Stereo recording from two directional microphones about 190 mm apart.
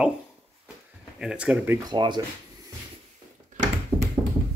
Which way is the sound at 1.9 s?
25° right (ahead or behind).